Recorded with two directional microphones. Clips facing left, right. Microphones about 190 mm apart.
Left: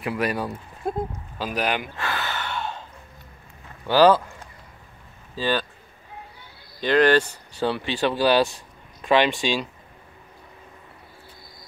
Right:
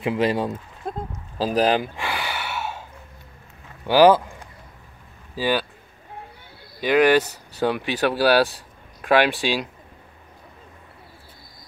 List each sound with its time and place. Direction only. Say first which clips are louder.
0.0 s speech: right 4 dB; 25° right (ahead or behind)
1.4 s speech: right 6 dB; 35° right (ahead or behind)
2.0 s gasp: right 1 dB; 15° right (ahead or behind)
3.8 s speech: right 2 dB; 15° right (ahead or behind)
5.3 s a sound: right 2 dB; 10° right (ahead or behind)
6.8 s speech: right 1 dB; 10° right (ahead or behind)